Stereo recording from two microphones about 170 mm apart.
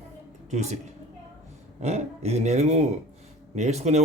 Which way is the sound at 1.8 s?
40° right (ahead or behind).